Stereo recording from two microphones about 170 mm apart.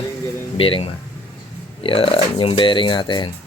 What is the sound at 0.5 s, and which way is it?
Speech, 30° left (ahead or behind).